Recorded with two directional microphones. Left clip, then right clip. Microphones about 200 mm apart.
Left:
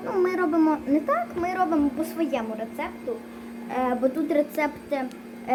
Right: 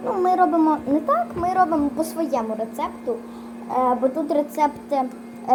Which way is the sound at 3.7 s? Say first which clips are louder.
Right 6 dB; 5° right (ahead or behind).